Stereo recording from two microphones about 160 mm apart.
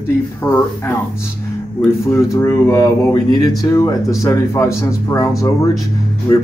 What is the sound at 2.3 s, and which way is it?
Speech, 20° left (ahead or behind).